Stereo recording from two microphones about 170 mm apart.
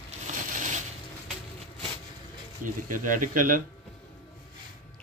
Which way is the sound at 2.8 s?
50° right (ahead or behind).